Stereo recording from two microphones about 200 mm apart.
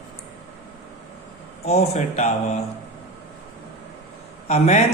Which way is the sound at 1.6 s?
35° left (ahead or behind).